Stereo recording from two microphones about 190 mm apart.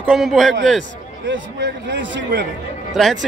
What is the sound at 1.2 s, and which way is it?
A man's voice, 70° right (ahead or behind).